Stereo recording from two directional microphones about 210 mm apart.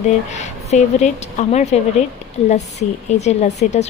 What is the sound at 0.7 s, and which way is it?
Speech, 35° left (ahead or behind).